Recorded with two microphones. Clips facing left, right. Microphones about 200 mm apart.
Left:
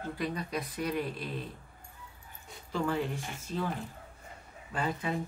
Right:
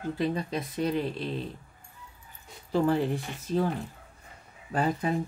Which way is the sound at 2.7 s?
35° right (ahead or behind).